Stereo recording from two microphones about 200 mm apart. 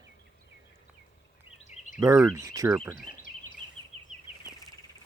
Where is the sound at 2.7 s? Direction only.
Centre (ahead or behind).